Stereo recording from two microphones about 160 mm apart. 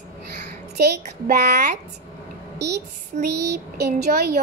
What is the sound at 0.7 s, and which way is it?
Speech, 70° right (ahead or behind).